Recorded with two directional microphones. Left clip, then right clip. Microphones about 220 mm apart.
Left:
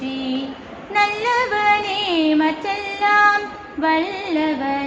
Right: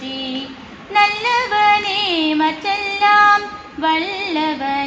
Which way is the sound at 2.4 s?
20° left (ahead or behind).